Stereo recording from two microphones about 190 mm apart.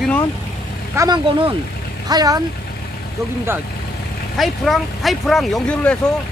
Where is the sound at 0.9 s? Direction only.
20° right (ahead or behind).